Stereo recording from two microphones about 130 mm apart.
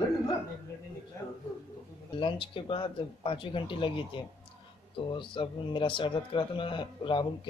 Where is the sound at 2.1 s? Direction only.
40° left (ahead or behind).